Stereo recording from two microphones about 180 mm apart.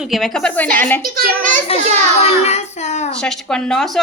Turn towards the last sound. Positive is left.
turn(degrees=0)  # may be behind; listen again after turning